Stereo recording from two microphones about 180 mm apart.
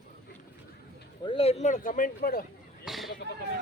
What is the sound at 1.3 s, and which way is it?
Speech, 35° left (ahead or behind).